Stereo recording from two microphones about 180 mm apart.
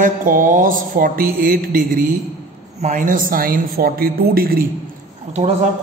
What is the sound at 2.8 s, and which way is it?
A woman's voice, 45° right (ahead or behind).